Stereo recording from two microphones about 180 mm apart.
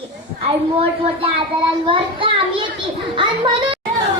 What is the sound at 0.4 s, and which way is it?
Speech, 30° right (ahead or behind).